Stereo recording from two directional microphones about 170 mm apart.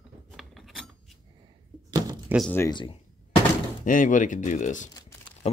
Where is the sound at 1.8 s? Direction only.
25° right (ahead or behind).